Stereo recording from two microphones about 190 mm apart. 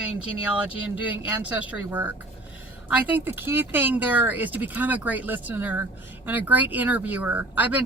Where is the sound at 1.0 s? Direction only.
5° right (ahead or behind).